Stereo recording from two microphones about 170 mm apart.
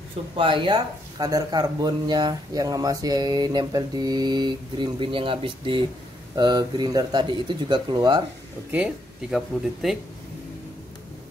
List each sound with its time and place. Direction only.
0.4 s speech: 30° right (ahead or behind)
8.7 s speech: 5° right (ahead or behind)